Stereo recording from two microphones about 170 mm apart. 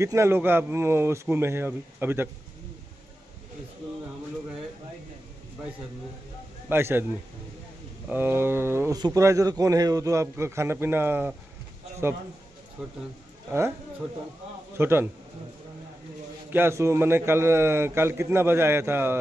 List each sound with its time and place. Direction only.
0.0 s speech: 15° right (ahead or behind)
6.7 s speech: 15° right (ahead or behind)
8.1 s speech: 15° right (ahead or behind)
14.8 s speech: 15° right (ahead or behind)
16.5 s speech: 15° right (ahead or behind)